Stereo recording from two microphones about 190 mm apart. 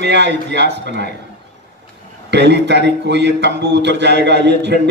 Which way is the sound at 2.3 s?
65° right (ahead or behind).